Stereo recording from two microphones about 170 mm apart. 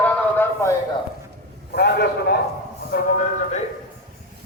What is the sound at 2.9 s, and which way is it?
Speech, 50° left (ahead or behind).